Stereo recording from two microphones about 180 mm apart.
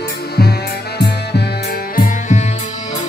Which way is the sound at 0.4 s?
65° left (ahead or behind).